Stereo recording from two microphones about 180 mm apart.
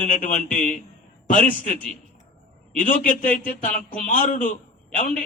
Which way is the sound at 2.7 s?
50° left (ahead or behind).